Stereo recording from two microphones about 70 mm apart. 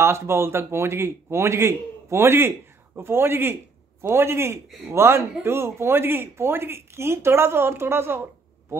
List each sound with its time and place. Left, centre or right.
0.0 s speech: right